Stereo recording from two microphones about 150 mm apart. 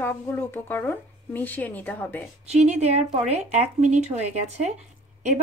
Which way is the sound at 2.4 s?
45° right (ahead or behind).